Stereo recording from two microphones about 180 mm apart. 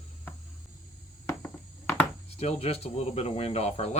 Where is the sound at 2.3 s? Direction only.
35° left (ahead or behind).